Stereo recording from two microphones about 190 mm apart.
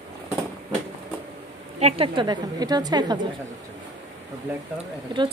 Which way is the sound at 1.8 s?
30° right (ahead or behind).